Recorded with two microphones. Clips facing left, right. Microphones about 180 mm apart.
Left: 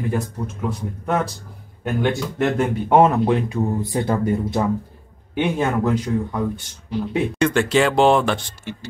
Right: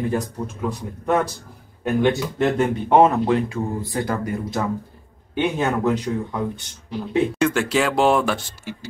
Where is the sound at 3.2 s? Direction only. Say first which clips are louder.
Left 1 dB; 20° left (ahead or behind).